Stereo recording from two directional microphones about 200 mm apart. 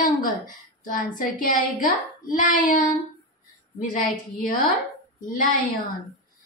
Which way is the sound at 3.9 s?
40° left (ahead or behind).